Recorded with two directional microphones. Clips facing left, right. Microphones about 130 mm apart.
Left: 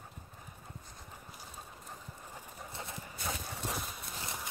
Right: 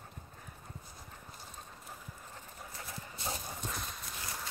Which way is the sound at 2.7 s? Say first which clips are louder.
Left 2 dB; 25° left (ahead or behind).